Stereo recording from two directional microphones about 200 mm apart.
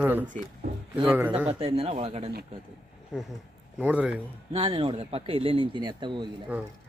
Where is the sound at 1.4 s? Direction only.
30° right (ahead or behind).